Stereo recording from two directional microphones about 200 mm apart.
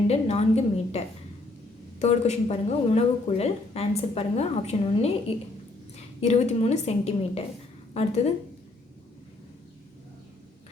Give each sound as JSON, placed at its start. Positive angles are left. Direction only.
{"t": 0.1, "sound": "speech", "side_deg": 30}
{"t": 6.1, "sound": "speech", "side_deg": 35}